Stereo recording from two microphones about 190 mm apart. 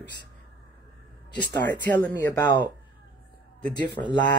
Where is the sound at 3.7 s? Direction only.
25° left (ahead or behind).